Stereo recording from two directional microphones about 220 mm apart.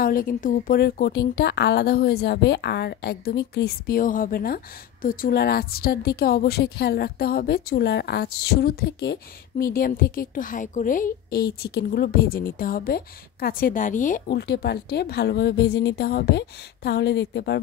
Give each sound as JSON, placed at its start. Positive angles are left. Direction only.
{"t": 0.0, "sound": "a woman's voice", "side_deg": 40}